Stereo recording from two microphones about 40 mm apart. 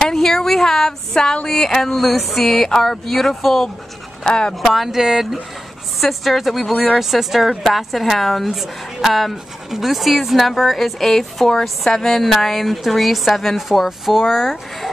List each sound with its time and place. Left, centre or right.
0.1 s speech: centre
4.2 s speech: left
4.6 s speech: centre